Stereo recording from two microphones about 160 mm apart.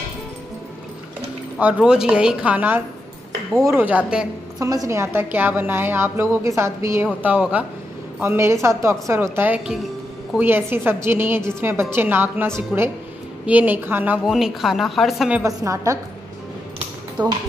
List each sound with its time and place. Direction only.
1.6 s a woman's voice: 10° right (ahead or behind)
4.6 s a woman's voice: 20° right (ahead or behind); by 15.4 s 5° right (ahead or behind)
15.4 s a woman's voice: 20° right (ahead or behind)
17.2 s a woman's voice: 25° right (ahead or behind)